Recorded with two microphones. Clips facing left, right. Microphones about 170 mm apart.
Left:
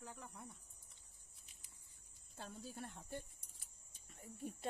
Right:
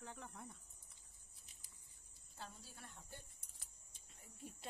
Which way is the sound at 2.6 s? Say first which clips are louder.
Left 9 dB; 60° left (ahead or behind).